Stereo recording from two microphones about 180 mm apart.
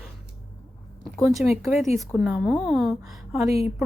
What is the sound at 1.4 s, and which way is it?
A woman's voice, centre (ahead or behind).